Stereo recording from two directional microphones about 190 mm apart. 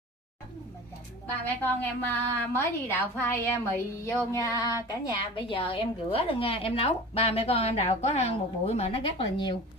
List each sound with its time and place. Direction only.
1.4 s a woman's voice: 10° left (ahead or behind); by 9.6 s 25° left (ahead or behind)